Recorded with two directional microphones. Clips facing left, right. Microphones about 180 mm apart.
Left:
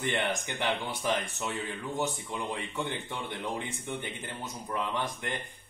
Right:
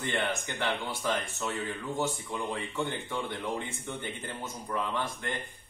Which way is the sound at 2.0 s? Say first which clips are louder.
Even; 15° left (ahead or behind).